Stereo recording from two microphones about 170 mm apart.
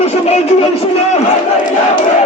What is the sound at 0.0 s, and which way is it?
Speech, 40° left (ahead or behind).